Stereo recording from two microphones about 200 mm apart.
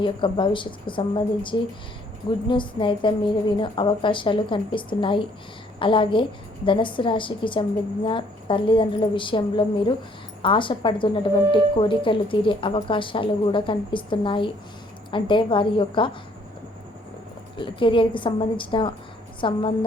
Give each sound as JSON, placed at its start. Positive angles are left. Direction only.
{"t": 0.0, "sound": "speech", "side_deg": 25}
{"t": 17.6, "sound": "speech", "side_deg": 25}